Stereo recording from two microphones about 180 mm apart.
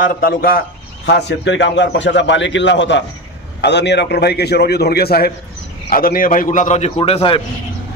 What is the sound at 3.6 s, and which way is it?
A man's voice, 70° left (ahead or behind).